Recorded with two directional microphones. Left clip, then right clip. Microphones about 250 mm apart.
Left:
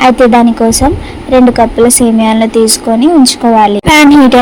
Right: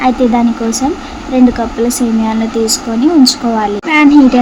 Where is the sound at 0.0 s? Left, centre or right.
Left.